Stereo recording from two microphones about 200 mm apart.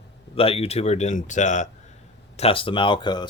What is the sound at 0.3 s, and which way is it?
Speech, 30° left (ahead or behind).